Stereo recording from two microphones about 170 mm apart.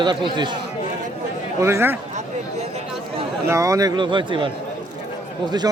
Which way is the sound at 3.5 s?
20° right (ahead or behind).